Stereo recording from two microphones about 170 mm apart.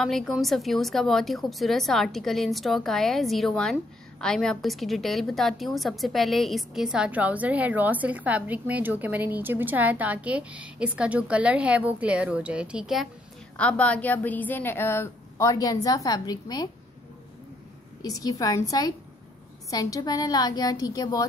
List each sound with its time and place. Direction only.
0.0 s a woman's voice: centre (ahead or behind); by 16.6 s 25° left (ahead or behind)
18.0 s a woman's voice: 20° left (ahead or behind)